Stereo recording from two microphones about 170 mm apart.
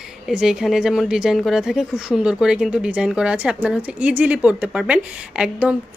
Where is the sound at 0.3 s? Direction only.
5° right (ahead or behind).